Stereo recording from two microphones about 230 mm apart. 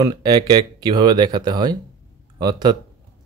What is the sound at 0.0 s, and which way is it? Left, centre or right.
Speech, centre.